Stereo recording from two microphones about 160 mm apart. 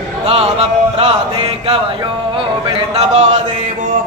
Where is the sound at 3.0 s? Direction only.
45° right (ahead or behind).